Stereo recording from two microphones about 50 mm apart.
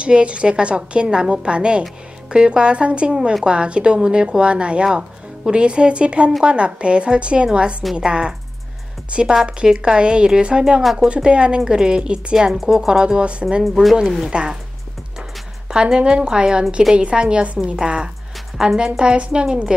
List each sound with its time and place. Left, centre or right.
0.0 s a woman's voice: right
9.5 s a woman's voice: centre
10.8 s speech: centre
11.2 s a woman's voice: centre
12.5 s a woman's voice: centre
13.7 s speech: centre
14.3 s a woman's voice: centre
15.7 s a woman's voice: centre